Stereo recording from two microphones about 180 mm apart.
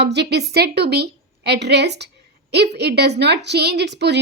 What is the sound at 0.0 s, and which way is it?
A woman's voice, 70° right (ahead or behind).